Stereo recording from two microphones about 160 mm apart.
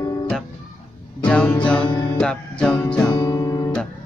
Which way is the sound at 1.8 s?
30° left (ahead or behind).